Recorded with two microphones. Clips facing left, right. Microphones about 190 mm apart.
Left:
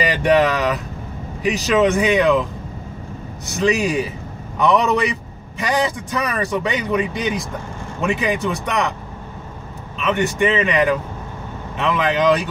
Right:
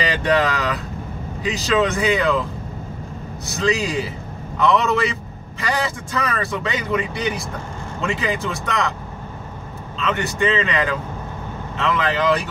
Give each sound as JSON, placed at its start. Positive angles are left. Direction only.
{"t": 0.2, "sound": "speech", "side_deg": 15}
{"t": 3.4, "sound": "speech", "side_deg": 15}
{"t": 9.9, "sound": "speech", "side_deg": 15}